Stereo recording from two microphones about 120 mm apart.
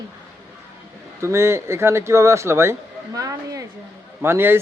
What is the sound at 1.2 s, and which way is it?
Speech, 25° right (ahead or behind).